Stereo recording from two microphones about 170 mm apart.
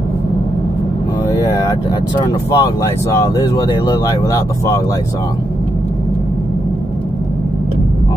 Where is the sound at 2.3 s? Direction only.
20° left (ahead or behind).